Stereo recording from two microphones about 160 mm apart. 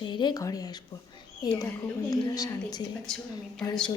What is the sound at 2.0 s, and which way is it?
Speech, 25° left (ahead or behind).